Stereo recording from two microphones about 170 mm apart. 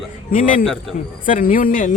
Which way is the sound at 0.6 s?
5° left (ahead or behind).